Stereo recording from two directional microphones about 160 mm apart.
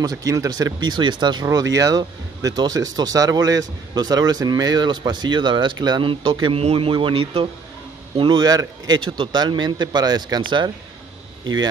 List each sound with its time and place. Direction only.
0.0 s speech: 20° right (ahead or behind)